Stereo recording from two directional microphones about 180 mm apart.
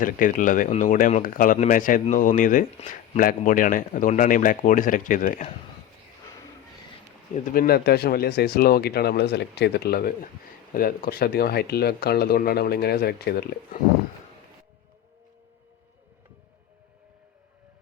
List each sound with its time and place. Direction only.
0.0 s speech: 45° left (ahead or behind)
7.4 s speech: 50° left (ahead or behind)